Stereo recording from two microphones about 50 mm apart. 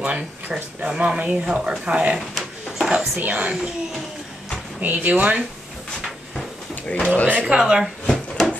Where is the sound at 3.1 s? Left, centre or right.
Right.